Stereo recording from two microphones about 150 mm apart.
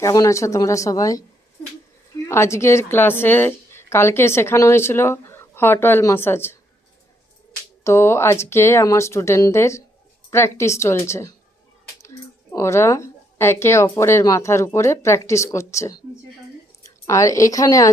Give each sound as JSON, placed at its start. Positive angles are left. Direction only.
{"t": 0.0, "sound": "speech", "side_deg": 20}
{"t": 2.2, "sound": "a woman's voice", "side_deg": 20}
{"t": 7.9, "sound": "a woman's voice", "side_deg": 15}
{"t": 17.1, "sound": "speech", "side_deg": 20}